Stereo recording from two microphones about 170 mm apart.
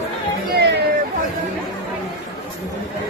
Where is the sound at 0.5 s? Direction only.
90° right.